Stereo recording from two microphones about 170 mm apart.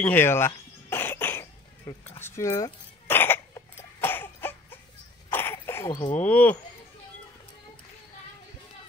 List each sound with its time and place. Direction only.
0.0 s speech: 10° left (ahead or behind)
0.8 s cough: 15° left (ahead or behind)
6.1 s speech: 10° left (ahead or behind)